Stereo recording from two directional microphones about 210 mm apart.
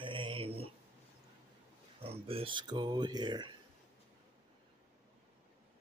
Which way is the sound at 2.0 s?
25° right (ahead or behind).